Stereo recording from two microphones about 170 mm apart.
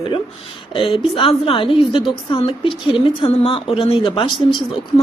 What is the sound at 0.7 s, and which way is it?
A woman's voice, 30° left (ahead or behind).